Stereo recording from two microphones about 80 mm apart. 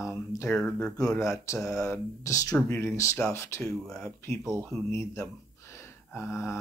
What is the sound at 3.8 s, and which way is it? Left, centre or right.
Speech, centre.